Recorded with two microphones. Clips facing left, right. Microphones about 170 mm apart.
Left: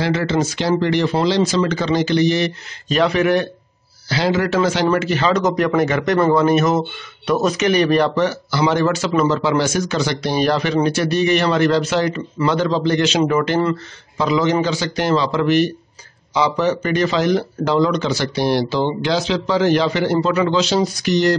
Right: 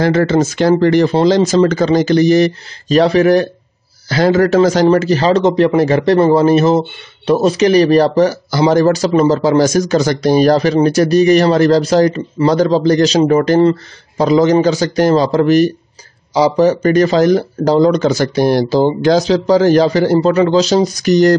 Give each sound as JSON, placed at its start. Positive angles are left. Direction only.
{"t": 0.0, "sound": "speech", "side_deg": -45}